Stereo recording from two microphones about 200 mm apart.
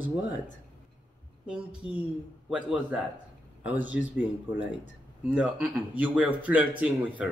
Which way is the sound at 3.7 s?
10° right (ahead or behind).